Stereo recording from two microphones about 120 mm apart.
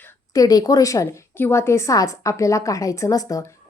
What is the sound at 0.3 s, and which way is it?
A woman's voice, 30° left (ahead or behind).